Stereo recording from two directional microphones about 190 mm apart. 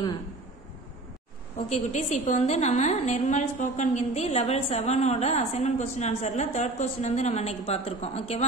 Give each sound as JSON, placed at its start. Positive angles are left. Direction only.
{"t": 1.7, "sound": "a woman's voice", "side_deg": 35}